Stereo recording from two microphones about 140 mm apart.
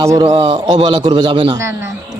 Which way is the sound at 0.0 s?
20° right (ahead or behind).